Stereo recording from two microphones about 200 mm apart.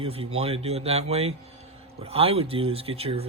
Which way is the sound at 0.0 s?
30° right (ahead or behind).